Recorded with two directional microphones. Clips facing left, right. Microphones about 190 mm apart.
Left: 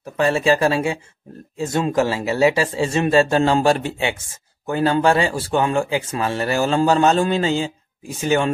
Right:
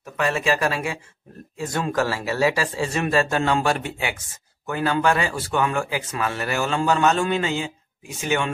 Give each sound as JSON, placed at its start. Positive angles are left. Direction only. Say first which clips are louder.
{"t": 0.0, "sound": "speech", "louder": "left 5 dB", "side_deg": 30}